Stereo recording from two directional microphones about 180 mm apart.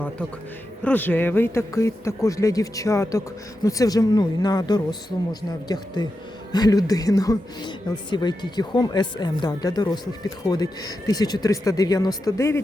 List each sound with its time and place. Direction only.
0.9 s a man's voice: 10° left (ahead or behind)